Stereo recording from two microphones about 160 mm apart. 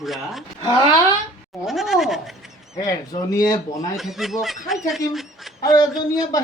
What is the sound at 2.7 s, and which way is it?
Speech, 20° left (ahead or behind).